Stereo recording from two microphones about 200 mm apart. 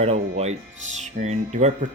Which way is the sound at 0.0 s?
30° right (ahead or behind).